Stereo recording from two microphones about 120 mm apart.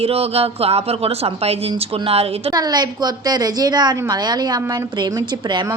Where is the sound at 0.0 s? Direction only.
55° right (ahead or behind).